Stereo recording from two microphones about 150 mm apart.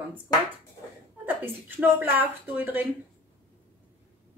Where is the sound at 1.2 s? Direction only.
15° right (ahead or behind).